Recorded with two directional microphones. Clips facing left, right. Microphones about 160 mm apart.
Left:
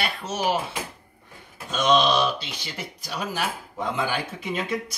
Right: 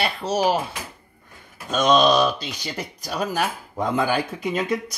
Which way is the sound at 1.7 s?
45° right (ahead or behind).